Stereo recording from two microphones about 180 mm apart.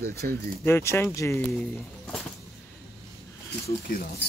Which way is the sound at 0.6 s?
15° left (ahead or behind).